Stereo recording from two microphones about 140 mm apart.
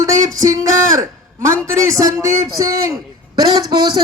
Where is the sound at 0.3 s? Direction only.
25° right (ahead or behind).